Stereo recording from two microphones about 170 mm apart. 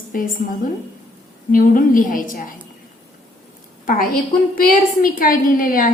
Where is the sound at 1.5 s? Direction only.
55° left (ahead or behind).